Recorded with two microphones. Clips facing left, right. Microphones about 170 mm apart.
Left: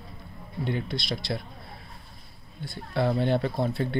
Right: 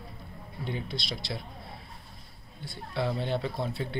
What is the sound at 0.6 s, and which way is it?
Speech, 60° left (ahead or behind).